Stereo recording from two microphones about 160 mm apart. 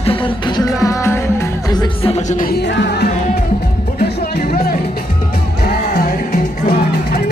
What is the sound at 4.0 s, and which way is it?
Music, 75° left (ahead or behind).